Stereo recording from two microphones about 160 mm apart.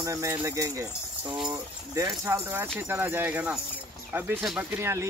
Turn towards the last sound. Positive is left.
turn(degrees=-5)  # may be behind; listen again after turning